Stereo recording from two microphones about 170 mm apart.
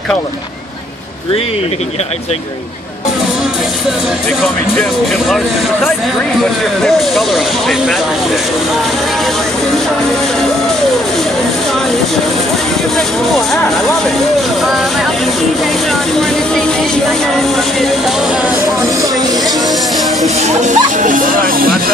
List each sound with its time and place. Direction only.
6.9 s speech: centre (ahead or behind)
12.9 s speech: centre (ahead or behind)
14.6 s speech: centre (ahead or behind)
15.9 s speech: centre (ahead or behind)
18.8 s speech: 20° right (ahead or behind)
20.4 s speech: 45° right (ahead or behind)